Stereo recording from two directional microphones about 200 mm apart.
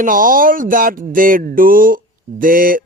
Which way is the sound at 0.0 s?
45° right (ahead or behind).